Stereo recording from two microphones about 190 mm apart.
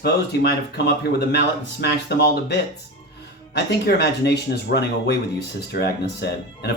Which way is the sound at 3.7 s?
60° left (ahead or behind).